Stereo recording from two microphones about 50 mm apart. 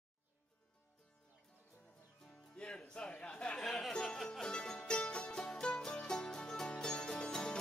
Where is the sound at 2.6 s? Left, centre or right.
Centre.